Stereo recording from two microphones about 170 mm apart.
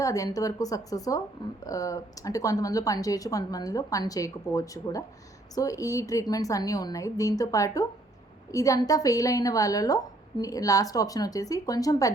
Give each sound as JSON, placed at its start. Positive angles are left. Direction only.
{"t": 0.0, "sound": "a woman's voice", "side_deg": 20}